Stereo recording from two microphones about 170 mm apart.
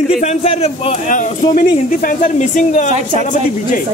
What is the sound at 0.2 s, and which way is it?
A man's voice, 40° left (ahead or behind).